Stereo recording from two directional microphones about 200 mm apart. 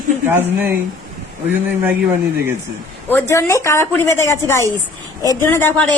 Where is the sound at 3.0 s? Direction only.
10° left (ahead or behind).